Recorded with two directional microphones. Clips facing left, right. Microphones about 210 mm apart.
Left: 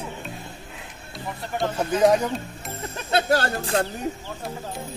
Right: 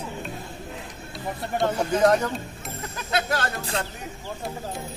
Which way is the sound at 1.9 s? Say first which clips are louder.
Left 2 dB; 5° left (ahead or behind).